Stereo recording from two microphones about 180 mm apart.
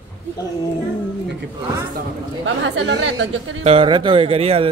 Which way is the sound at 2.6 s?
80° right.